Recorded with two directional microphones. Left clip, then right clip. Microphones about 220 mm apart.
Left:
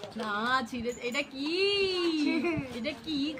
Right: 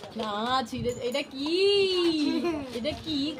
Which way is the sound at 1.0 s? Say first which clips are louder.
Right 3 dB; 35° left (ahead or behind).